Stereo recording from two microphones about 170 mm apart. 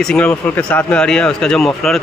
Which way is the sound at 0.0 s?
5° left (ahead or behind).